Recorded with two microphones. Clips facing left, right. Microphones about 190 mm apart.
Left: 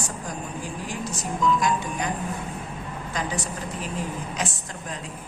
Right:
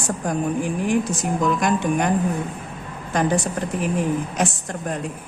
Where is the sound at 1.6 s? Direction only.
60° right (ahead or behind).